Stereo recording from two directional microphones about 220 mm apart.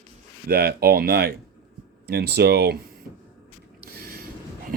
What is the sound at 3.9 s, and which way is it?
Mechanisms, 45° right (ahead or behind).